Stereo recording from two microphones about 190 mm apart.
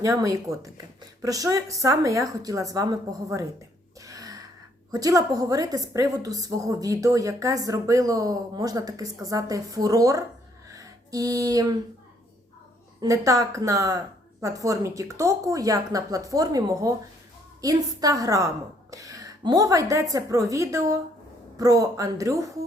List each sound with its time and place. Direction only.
0.0 s a woman's voice: 15° right (ahead or behind)
4.0 s a sound: 20° right (ahead or behind)
4.9 s a woman's voice: 20° right (ahead or behind)
10.7 s music: 20° right (ahead or behind)
13.0 s a woman's voice: 15° right (ahead or behind)